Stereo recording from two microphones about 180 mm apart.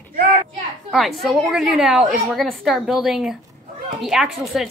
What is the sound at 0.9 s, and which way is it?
A woman's voice, centre (ahead or behind).